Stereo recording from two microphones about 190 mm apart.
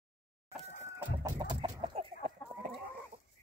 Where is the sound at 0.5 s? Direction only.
15° right (ahead or behind).